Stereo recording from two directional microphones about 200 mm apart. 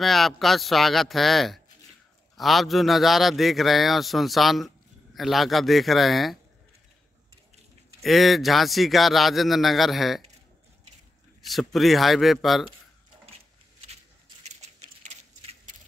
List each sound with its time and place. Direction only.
0.0 s a man's voice: centre (ahead or behind)
8.0 s a man's voice: centre (ahead or behind)
11.4 s a man's voice: centre (ahead or behind)
14.4 s a sound: 35° right (ahead or behind)